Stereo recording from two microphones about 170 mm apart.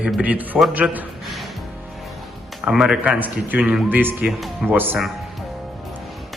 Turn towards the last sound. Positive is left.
turn(degrees=-10)  # may be behind; listen again after turning